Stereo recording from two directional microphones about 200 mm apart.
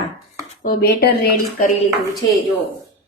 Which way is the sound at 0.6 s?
45° left (ahead or behind).